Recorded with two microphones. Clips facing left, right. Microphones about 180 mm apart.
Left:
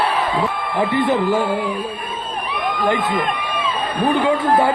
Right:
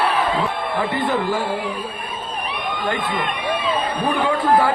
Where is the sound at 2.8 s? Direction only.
20° left (ahead or behind).